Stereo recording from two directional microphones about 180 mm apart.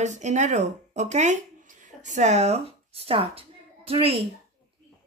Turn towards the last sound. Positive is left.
turn(degrees=-30)  # may be behind; listen again after turning